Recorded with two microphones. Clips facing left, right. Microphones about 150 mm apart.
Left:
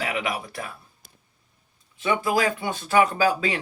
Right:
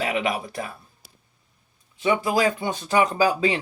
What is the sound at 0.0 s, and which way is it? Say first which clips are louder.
Speech: right 3 dB; 25° right (ahead or behind).